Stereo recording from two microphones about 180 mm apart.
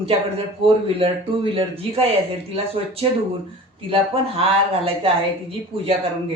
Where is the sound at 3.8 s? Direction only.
30° right (ahead or behind).